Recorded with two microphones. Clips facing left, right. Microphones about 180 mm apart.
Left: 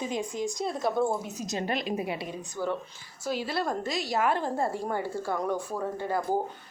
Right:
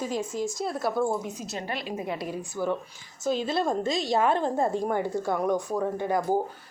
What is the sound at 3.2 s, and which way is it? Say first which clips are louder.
A woman's voice: right 4 dB; 20° right (ahead or behind).